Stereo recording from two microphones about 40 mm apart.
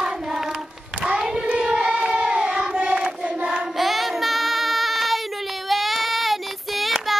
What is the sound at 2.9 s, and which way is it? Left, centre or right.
Choir, right.